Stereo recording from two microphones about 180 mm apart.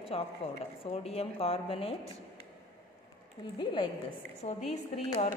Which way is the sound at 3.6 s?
25° left (ahead or behind).